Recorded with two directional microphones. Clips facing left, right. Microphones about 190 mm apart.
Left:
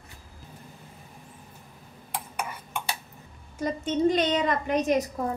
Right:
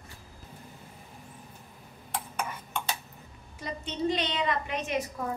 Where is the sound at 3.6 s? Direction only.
45° left (ahead or behind).